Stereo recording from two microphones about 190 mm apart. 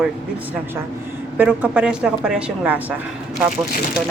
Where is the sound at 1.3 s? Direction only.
5° right (ahead or behind).